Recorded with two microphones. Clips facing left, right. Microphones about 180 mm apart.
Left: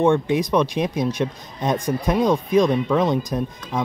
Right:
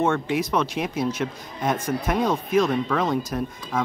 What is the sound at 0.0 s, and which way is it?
Speech, 15° left (ahead or behind).